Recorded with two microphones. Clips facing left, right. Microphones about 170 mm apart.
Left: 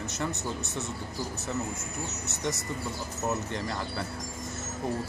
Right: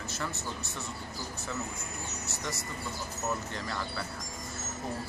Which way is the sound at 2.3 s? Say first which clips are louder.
Left 6 dB; 20° left (ahead or behind).